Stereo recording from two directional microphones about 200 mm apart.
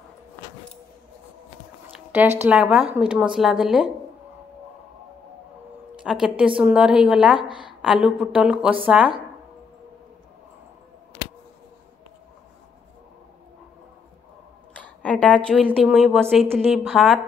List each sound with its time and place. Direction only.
1.9 s speech: 10° right (ahead or behind)
6.0 s speech: 5° right (ahead or behind)
14.8 s a woman's voice: 5° left (ahead or behind)